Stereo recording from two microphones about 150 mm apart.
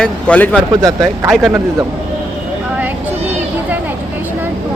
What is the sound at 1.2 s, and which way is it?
Speech, centre (ahead or behind).